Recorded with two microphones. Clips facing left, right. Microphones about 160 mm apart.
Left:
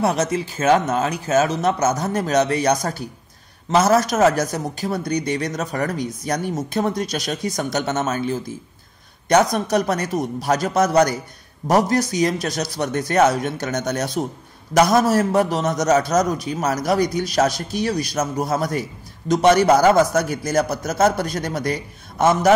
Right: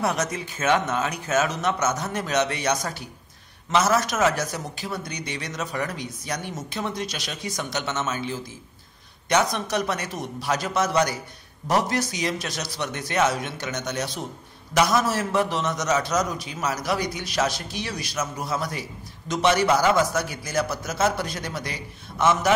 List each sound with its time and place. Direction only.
0.0 s a man's voice: 30° left (ahead or behind)